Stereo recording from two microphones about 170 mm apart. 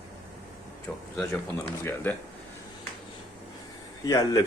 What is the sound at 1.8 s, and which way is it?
Speech, 10° left (ahead or behind).